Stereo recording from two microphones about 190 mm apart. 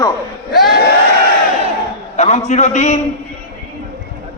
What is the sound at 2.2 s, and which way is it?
Speech, 35° left (ahead or behind).